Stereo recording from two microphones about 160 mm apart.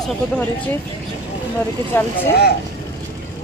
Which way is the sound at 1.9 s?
15° left (ahead or behind).